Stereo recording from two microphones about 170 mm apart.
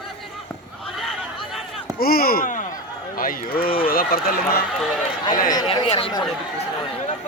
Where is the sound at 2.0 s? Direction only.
60° left (ahead or behind).